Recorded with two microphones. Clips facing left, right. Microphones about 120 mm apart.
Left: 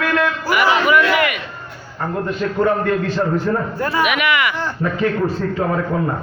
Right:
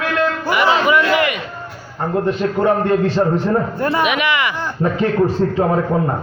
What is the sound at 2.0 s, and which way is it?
Music, 30° right (ahead or behind).